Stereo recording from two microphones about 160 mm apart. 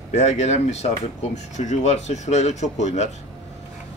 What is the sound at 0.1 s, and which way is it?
Speech, 45° left (ahead or behind).